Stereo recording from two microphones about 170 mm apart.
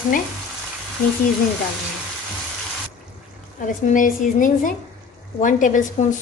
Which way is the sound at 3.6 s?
50° left (ahead or behind).